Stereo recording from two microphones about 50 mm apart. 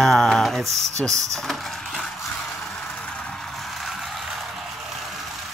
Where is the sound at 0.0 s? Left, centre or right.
Centre.